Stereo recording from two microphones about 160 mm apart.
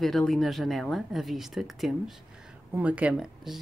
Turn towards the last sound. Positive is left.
turn(degrees=-5)  # may be behind; listen again after turning